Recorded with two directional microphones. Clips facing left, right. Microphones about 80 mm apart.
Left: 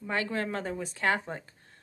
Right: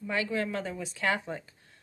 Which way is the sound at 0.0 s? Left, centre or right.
Left.